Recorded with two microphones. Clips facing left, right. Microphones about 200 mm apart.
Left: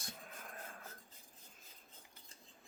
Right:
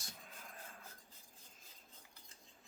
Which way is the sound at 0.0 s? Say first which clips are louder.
Left 4 dB; 55° left (ahead or behind).